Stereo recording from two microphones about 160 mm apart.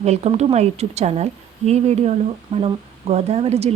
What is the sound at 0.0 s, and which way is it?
A woman's voice, 45° right (ahead or behind).